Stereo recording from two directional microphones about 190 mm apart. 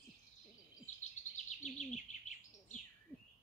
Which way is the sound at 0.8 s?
40° left (ahead or behind).